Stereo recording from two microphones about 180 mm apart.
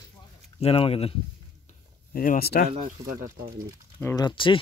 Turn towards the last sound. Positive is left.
turn(degrees=25)  # may be behind; listen again after turning